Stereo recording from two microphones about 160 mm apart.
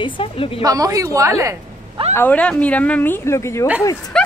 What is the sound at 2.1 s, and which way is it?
A woman's voice, 10° left (ahead or behind).